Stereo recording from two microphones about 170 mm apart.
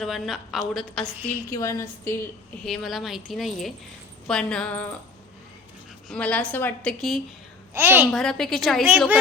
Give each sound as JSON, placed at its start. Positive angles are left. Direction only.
{"t": 0.0, "sound": "speech", "side_deg": 0}
{"t": 1.5, "sound": "a woman's voice", "side_deg": 20}
{"t": 2.6, "sound": "speech", "side_deg": 0}
{"t": 6.1, "sound": "a woman's voice", "side_deg": 5}
{"t": 7.7, "sound": "a woman's voice", "side_deg": -15}
{"t": 8.1, "sound": "speech", "side_deg": 5}